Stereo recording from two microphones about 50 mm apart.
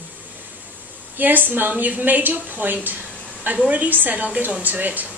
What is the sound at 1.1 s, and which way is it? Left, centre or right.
A woman's voice, right.